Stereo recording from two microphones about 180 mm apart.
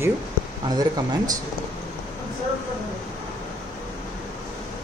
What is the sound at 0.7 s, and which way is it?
Speech, 20° right (ahead or behind).